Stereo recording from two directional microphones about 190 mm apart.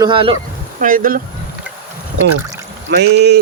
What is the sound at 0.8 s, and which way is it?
Speech, 45° right (ahead or behind).